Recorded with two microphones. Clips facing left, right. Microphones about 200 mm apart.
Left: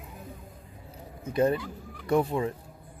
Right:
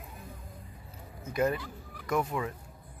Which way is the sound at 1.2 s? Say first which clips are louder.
Left 4 dB; 30° left (ahead or behind).